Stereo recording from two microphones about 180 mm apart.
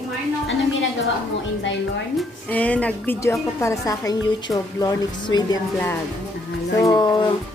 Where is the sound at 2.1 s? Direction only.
5° left (ahead or behind); by 5.6 s 25° left (ahead or behind).